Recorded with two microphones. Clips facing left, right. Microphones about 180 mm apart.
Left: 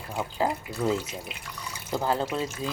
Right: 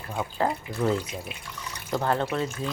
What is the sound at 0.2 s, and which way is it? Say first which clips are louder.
Speech: right 1 dB; 10° left (ahead or behind).